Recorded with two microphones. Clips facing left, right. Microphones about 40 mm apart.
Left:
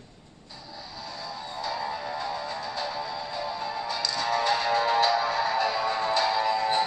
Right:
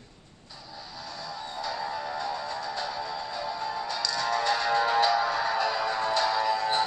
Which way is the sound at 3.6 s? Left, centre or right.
Left.